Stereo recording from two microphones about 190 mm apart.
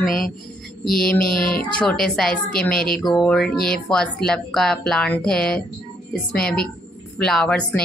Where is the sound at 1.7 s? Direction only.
5° left (ahead or behind).